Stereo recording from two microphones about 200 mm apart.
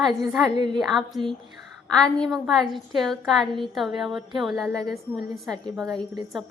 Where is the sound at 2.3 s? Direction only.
Centre (ahead or behind).